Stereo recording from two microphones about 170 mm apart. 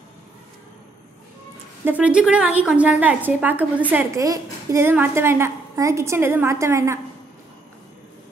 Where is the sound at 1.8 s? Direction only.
10° right (ahead or behind).